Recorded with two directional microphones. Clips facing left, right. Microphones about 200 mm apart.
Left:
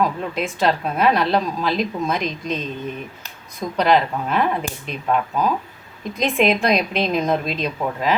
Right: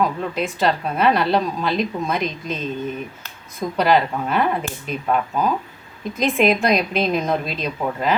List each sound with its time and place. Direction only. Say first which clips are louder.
0.0 s a woman's voice: even; centre (ahead or behind)